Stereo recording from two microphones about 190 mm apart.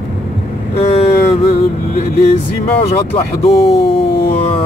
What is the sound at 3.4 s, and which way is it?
Speech, 30° left (ahead or behind).